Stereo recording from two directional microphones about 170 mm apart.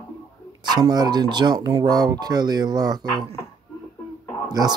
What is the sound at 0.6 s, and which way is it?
Speech, 25° right (ahead or behind).